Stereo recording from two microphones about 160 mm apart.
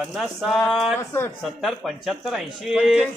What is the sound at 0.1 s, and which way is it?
Speech, centre (ahead or behind).